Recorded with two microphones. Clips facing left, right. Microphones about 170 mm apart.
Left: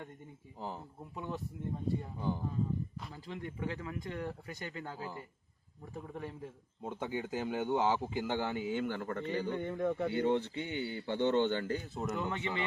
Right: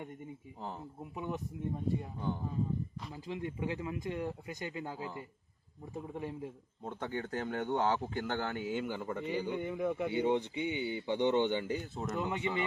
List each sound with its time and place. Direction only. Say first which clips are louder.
0.6 s speech: left 1 dB; centre (ahead or behind)
1.1 s a man's voice: right 2 dB; 15° right (ahead or behind)
2.1 s speech: left 1 dB; 5° left (ahead or behind)
3.1 s a man's voice: right 4 dB; 15° right (ahead or behind)
6.8 s a man's voice: left 1 dB; 5° left (ahead or behind); by 11.7 s 15° right (ahead or behind)
11.7 s speech: even; centre (ahead or behind)
12.3 s a man's voice: right 2 dB; 15° right (ahead or behind)